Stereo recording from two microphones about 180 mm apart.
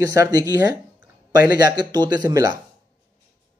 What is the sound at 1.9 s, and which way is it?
Speech, 20° right (ahead or behind).